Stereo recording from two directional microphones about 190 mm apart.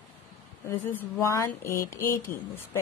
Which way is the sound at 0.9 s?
15° left (ahead or behind).